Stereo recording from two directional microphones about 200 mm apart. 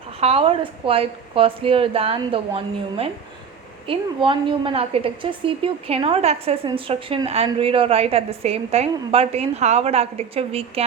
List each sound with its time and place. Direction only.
0.2 s a woman's voice: 30° right (ahead or behind)